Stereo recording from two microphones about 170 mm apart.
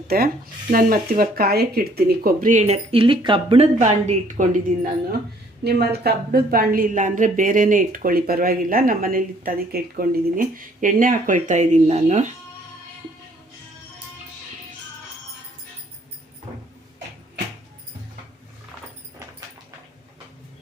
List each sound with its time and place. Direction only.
0.1 s a woman's voice: 65° right (ahead or behind); by 3.7 s 30° right (ahead or behind)
3.8 s speech: 45° right (ahead or behind)
5.6 s a woman's voice: 70° right (ahead or behind); by 12.3 s 45° right (ahead or behind)